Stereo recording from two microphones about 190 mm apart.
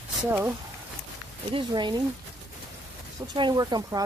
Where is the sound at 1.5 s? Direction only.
25° right (ahead or behind).